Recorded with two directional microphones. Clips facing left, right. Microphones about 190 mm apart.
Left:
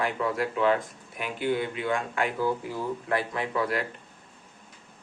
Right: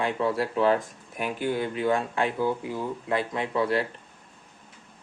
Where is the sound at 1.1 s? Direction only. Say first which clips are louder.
Even; 45° right (ahead or behind).